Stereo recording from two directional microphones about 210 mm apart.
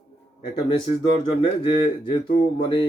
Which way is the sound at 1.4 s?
25° left (ahead or behind).